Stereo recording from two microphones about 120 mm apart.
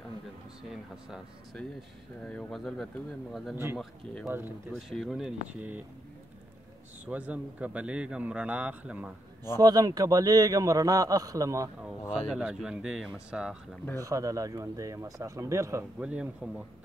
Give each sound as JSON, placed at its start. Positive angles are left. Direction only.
{"t": 1.1, "sound": "speech", "side_deg": 5}
{"t": 4.3, "sound": "a man's voice", "side_deg": -15}
{"t": 4.7, "sound": "speech", "side_deg": 0}
{"t": 7.1, "sound": "a man's voice", "side_deg": -10}
{"t": 9.6, "sound": "a man's voice", "side_deg": -35}
{"t": 12.3, "sound": "speech", "side_deg": -5}
{"t": 13.9, "sound": "speech", "side_deg": -30}
{"t": 16.0, "sound": "a man's voice", "side_deg": -10}